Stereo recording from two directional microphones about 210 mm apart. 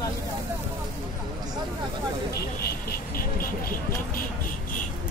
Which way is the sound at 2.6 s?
45° left (ahead or behind).